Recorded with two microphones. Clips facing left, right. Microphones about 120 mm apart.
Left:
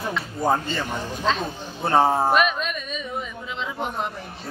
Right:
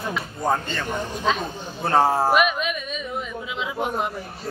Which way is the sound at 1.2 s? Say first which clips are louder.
Left 1 dB; 10° right (ahead or behind).